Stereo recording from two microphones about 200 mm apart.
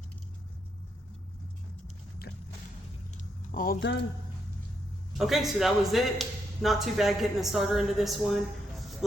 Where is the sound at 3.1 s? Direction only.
35° left (ahead or behind); by 4.0 s 55° left (ahead or behind).